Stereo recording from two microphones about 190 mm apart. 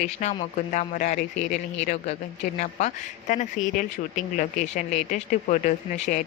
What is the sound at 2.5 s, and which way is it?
A woman's voice, 40° left (ahead or behind).